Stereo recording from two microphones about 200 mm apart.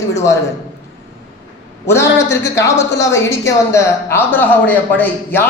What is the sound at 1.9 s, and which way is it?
A man's voice, 15° left (ahead or behind).